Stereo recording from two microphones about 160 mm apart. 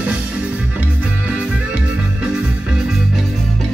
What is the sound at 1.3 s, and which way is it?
Music, 5° right (ahead or behind).